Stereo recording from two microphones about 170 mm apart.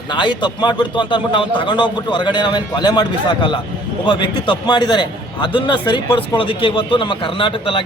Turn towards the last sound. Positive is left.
turn(degrees=30)  # may be behind; listen again after turning